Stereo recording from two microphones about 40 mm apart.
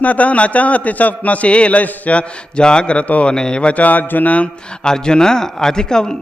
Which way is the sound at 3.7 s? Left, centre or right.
Left.